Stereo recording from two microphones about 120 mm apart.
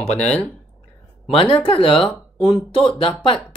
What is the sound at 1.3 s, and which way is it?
Speech, 50° left (ahead or behind).